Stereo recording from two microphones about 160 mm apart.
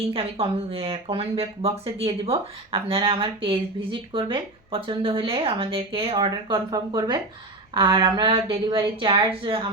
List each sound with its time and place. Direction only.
0.1 s speech: 35° right (ahead or behind)